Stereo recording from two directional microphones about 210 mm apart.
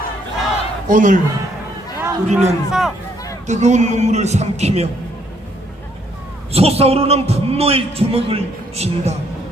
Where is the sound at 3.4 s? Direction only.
35° right (ahead or behind).